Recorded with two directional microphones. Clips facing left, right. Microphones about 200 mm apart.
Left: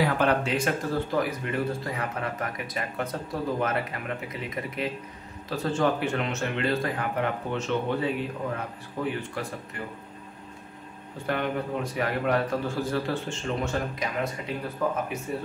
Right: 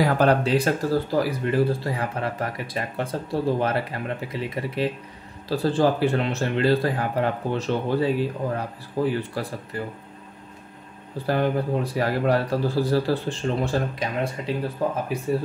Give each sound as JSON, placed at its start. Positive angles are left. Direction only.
{"t": 0.0, "sound": "speech", "side_deg": -35}
{"t": 11.1, "sound": "speech", "side_deg": -35}